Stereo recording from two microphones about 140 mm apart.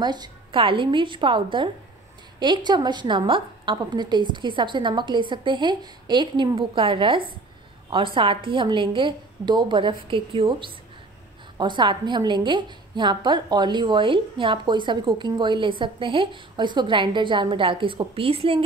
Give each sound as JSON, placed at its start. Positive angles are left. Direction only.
{"t": 0.0, "sound": "a woman's voice", "side_deg": -30}